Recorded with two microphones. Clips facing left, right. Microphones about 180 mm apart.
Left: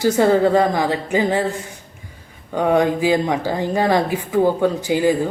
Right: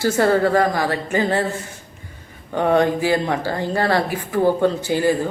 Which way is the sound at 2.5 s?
10° left (ahead or behind).